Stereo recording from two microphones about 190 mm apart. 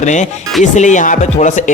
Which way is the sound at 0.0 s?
40° left (ahead or behind).